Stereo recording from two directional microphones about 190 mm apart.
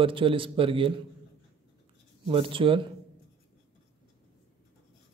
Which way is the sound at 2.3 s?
30° right (ahead or behind).